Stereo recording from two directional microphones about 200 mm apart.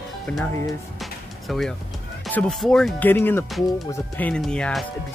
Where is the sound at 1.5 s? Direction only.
Centre (ahead or behind).